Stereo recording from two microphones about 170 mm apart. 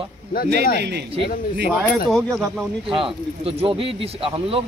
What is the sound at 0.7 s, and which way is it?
Speech, 75° right (ahead or behind).